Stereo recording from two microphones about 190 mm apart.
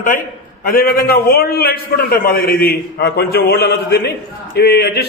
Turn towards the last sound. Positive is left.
turn(degrees=60)  # may be behind; listen again after turning